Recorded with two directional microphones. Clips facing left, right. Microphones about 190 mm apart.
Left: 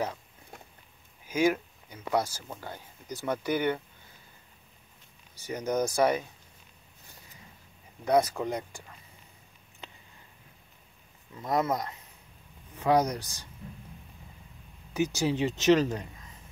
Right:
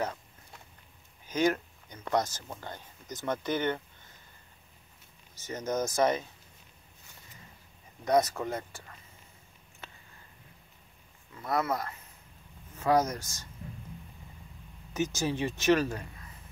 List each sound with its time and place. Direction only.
1.2 s speech: 10° left (ahead or behind)
5.4 s speech: 15° left (ahead or behind)
8.0 s speech: 10° left (ahead or behind)
9.8 s a sound: 15° left (ahead or behind)
11.3 s speech: 20° left (ahead or behind)
15.0 s speech: 15° left (ahead or behind)